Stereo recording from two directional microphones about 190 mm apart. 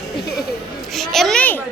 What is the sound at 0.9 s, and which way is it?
Speech, centre (ahead or behind).